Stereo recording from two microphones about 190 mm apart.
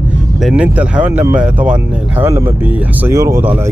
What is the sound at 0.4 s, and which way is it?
Speech, 5° right (ahead or behind).